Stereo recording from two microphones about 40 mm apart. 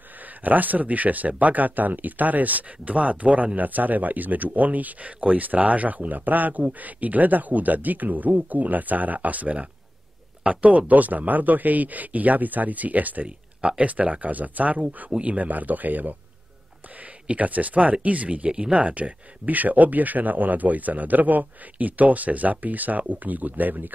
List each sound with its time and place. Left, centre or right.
0.4 s speech: right
13.6 s speech: right
17.3 s speech: right